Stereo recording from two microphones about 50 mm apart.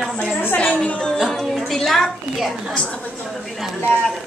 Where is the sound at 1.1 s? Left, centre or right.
Centre.